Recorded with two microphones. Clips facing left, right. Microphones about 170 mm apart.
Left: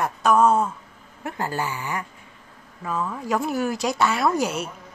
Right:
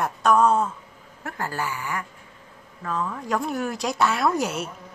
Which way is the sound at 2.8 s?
5° left (ahead or behind).